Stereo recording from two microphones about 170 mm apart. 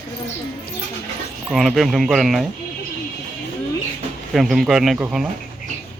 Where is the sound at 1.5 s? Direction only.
Centre (ahead or behind).